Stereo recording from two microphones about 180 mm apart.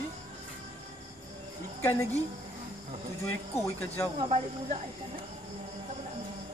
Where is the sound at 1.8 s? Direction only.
15° left (ahead or behind).